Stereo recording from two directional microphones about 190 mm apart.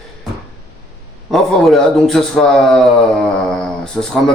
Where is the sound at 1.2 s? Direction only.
Centre (ahead or behind).